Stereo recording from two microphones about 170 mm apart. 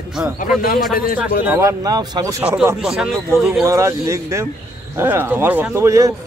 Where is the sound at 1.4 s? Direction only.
15° right (ahead or behind).